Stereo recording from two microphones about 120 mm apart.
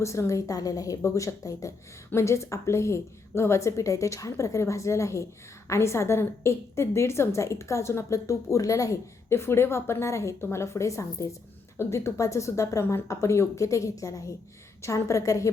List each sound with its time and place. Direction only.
0.0 s a woman's voice: 25° left (ahead or behind)